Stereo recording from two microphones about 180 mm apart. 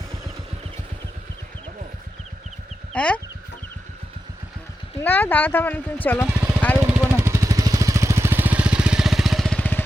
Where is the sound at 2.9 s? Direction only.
5° left (ahead or behind).